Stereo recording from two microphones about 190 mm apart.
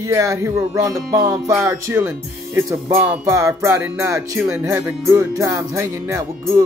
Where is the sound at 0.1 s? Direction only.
15° right (ahead or behind).